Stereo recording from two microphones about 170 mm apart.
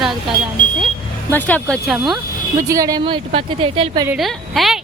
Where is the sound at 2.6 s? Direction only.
20° right (ahead or behind).